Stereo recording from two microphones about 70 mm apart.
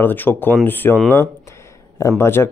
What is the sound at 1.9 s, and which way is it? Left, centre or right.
Speech, left.